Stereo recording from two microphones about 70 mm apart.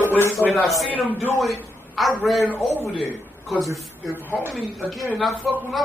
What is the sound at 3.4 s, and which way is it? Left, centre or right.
A man's voice, centre.